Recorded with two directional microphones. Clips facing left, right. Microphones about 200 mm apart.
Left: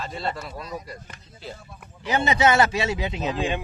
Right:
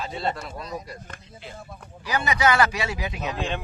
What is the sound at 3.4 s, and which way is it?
Speech, 15° left (ahead or behind).